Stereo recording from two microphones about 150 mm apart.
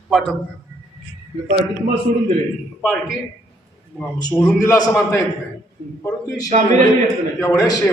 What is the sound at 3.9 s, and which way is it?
Speech, 5° left (ahead or behind).